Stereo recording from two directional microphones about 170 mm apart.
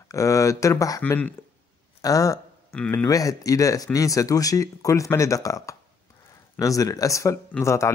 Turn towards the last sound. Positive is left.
turn(degrees=15)  # may be behind; listen again after turning